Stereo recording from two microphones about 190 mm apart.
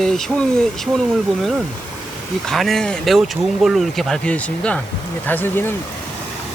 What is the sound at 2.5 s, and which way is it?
Speech, centre (ahead or behind).